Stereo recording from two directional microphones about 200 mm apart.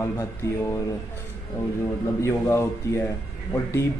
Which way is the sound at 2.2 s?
15° left (ahead or behind).